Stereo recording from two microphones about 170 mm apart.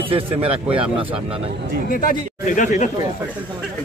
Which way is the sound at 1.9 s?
55° left (ahead or behind).